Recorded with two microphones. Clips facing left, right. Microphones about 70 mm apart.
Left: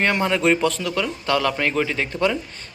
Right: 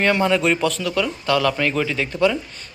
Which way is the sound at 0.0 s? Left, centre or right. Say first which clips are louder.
Right 2 dB; left.